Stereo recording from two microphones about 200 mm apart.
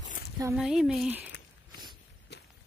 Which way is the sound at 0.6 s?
5° right (ahead or behind).